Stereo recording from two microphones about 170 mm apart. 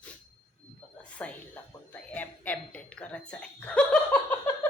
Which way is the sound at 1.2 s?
10° left (ahead or behind).